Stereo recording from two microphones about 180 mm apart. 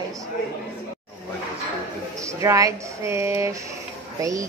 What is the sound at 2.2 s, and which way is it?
Speech, 15° right (ahead or behind).